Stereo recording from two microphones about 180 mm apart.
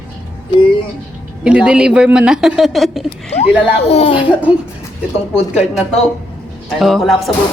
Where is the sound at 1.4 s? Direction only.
5° right (ahead or behind).